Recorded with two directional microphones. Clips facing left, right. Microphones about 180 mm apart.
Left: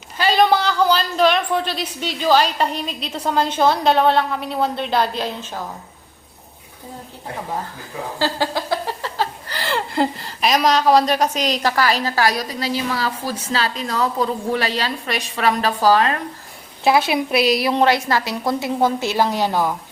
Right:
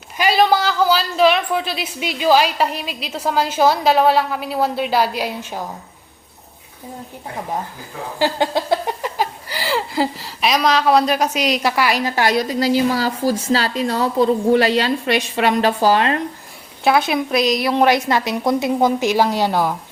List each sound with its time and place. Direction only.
0.2 s speech: 5° right (ahead or behind)
8.2 s a woman's voice: 20° right (ahead or behind)
16.8 s speech: 5° left (ahead or behind)
17.8 s a woman's voice: 20° right (ahead or behind)